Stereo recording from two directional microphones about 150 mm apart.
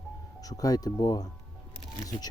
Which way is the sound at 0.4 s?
25° left (ahead or behind).